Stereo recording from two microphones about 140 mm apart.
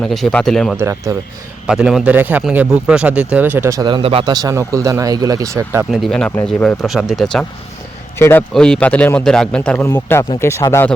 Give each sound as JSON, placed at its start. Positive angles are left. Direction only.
{"t": 0.0, "sound": "speech", "side_deg": 5}
{"t": 0.8, "sound": "speech", "side_deg": -20}
{"t": 1.6, "sound": "speech", "side_deg": -5}
{"t": 3.8, "sound": "speech", "side_deg": -35}
{"t": 4.3, "sound": "speech", "side_deg": -25}
{"t": 5.9, "sound": "speech", "side_deg": 0}
{"t": 8.2, "sound": "speech", "side_deg": 15}
{"t": 8.5, "sound": "speech", "side_deg": 5}